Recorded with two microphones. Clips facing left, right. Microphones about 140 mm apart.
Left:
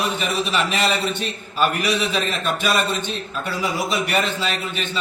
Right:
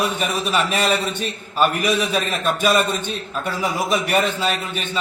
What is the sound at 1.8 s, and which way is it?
A man's voice, 50° right (ahead or behind).